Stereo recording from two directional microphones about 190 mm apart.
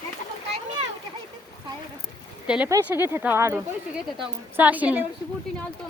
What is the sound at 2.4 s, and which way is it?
Speech, 5° right (ahead or behind).